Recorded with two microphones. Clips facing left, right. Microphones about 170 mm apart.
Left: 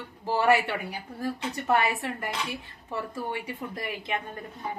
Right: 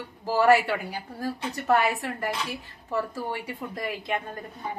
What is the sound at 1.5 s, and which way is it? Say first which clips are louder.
Speech: right 3 dB; 20° left (ahead or behind).